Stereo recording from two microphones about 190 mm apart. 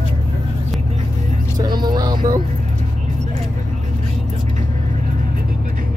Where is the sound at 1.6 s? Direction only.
25° right (ahead or behind).